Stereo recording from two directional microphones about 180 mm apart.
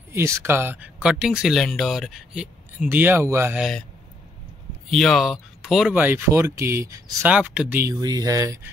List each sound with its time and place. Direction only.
0.1 s speech: 15° right (ahead or behind)
4.9 s speech: centre (ahead or behind)
7.8 s speech: 20° right (ahead or behind)